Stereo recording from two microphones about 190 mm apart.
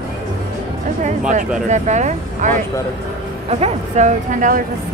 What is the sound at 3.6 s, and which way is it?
A woman's voice, 35° right (ahead or behind).